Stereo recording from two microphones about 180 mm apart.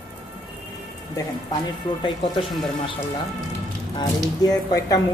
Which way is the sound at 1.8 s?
25° left (ahead or behind).